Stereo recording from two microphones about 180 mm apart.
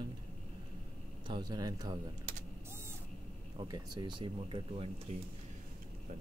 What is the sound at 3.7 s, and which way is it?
A man's voice, 20° right (ahead or behind).